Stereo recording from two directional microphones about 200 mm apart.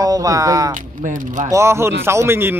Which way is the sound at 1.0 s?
40° right (ahead or behind).